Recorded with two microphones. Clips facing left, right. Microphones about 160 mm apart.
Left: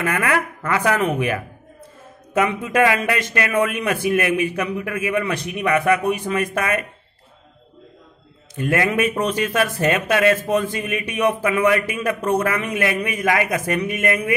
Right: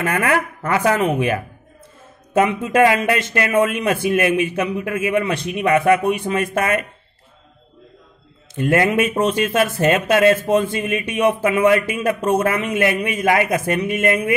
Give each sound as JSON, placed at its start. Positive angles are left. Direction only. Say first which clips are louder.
{"t": 0.0, "sound": "speech", "louder": "right 2 dB", "side_deg": -30}
{"t": 8.5, "sound": "speech", "louder": "right 3 dB", "side_deg": -25}